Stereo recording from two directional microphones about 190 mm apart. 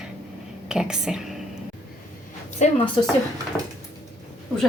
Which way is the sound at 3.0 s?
25° left (ahead or behind).